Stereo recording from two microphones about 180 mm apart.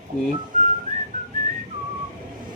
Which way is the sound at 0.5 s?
45° right (ahead or behind).